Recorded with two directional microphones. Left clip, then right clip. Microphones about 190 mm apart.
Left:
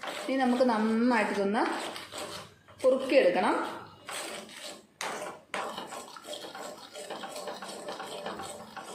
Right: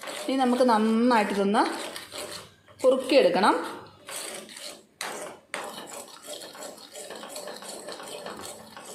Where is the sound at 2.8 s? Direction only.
40° right (ahead or behind).